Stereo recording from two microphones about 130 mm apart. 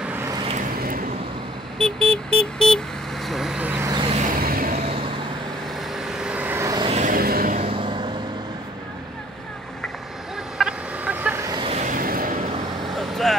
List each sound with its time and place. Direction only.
0.0 s vehicle: 15° right (ahead or behind)
0.5 s vehicle: 80° right
1.8 s vehicle: 5° left (ahead or behind)
3.6 s vehicle: 15° right (ahead or behind)
4.3 s vehicle: 90° right
5.9 s vehicle: 5° right (ahead or behind)
6.6 s vehicle: 30° right (ahead or behind)
6.9 s vehicle: 80° right
7.6 s vehicle: 40° right (ahead or behind)
10.6 s fowl: 10° right (ahead or behind)
11.6 s vehicle: 55° right (ahead or behind)
11.9 s a sound: 90° right
12.9 s vehicle: centre (ahead or behind)